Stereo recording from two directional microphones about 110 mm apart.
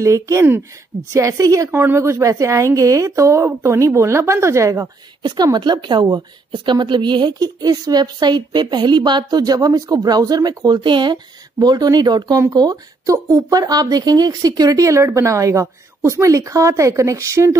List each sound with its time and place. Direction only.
0.0 s a woman's voice: 30° right (ahead or behind)
1.7 s speech: 20° right (ahead or behind)
5.2 s a woman's voice: 40° right (ahead or behind)